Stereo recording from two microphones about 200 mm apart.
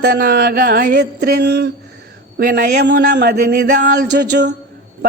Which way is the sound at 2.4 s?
45° right (ahead or behind).